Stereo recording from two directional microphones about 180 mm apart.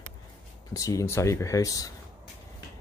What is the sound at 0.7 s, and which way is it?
Speech, 20° left (ahead or behind).